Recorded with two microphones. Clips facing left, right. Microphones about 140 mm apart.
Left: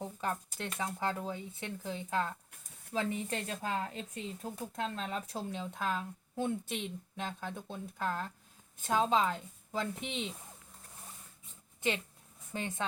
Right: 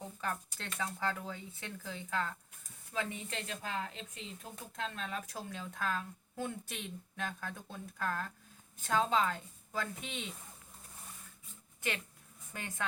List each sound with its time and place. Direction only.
0.0 s shuffling cards: 20° left (ahead or behind)
0.6 s speech: 20° left (ahead or behind)
2.9 s a woman's voice: 35° left (ahead or behind)
11.8 s speech: 25° left (ahead or behind)